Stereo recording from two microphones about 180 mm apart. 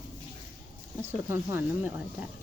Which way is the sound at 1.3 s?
10° right (ahead or behind).